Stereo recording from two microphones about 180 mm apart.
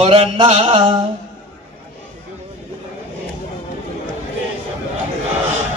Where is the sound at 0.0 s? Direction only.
35° right (ahead or behind).